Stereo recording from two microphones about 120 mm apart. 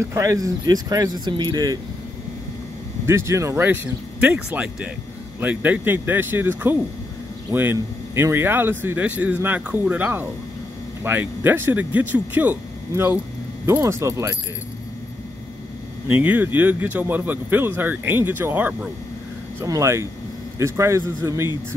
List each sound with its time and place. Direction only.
0.0 s speech: 25° right (ahead or behind)
3.1 s speech: 20° right (ahead or behind)
7.5 s a man's voice: 20° right (ahead or behind)
16.1 s speech: 15° right (ahead or behind)
19.6 s a man's voice: 25° right (ahead or behind)